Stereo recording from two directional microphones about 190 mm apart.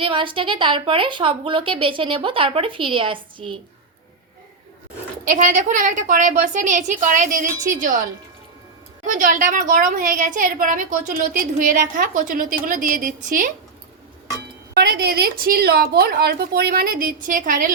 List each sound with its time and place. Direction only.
0.0 s a woman's voice: 25° right (ahead or behind)
5.2 s a woman's voice: 40° right (ahead or behind)
9.0 s a woman's voice: 40° right (ahead or behind)
14.7 s a woman's voice: 60° right (ahead or behind)